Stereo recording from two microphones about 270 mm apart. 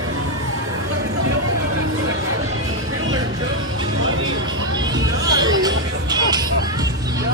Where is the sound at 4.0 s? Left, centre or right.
Right.